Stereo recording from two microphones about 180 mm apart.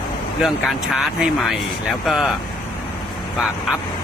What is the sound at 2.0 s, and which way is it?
Speech, centre (ahead or behind).